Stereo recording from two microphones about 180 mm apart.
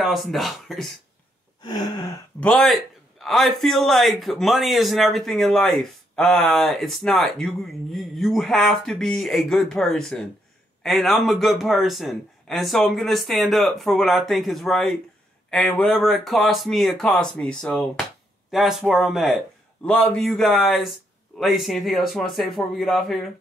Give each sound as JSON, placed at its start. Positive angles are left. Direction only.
{"t": 0.0, "sound": "a man's voice", "side_deg": 0}
{"t": 1.6, "sound": "gasp", "side_deg": 25}
{"t": 2.4, "sound": "a man's voice", "side_deg": 5}